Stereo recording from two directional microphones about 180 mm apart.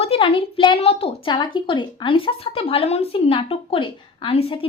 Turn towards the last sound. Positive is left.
turn(degrees=30)  # may be behind; listen again after turning